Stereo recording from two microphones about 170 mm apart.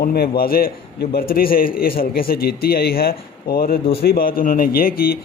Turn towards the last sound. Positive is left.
turn(degrees=60)  # may be behind; listen again after turning